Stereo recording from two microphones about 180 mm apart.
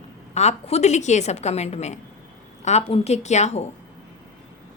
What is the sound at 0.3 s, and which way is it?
A woman's voice, 40° left (ahead or behind).